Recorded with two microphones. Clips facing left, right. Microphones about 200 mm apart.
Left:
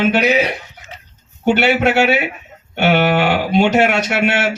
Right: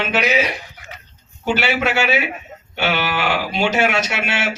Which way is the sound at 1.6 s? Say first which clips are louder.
Left 5 dB; 60° left (ahead or behind).